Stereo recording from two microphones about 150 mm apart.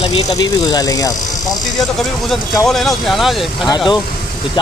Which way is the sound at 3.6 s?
25° left (ahead or behind).